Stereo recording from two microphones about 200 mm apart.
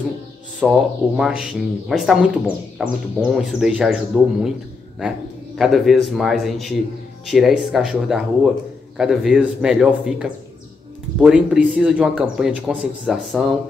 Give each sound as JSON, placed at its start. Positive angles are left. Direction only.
{"t": 0.6, "sound": "speech", "side_deg": 0}